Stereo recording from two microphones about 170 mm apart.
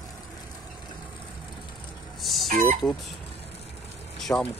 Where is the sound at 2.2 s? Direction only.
Centre (ahead or behind).